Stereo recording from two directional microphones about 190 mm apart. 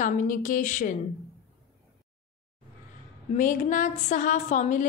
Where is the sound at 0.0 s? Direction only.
45° left (ahead or behind).